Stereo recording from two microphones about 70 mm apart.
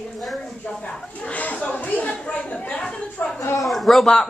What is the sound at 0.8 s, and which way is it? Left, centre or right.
A woman's voice, centre.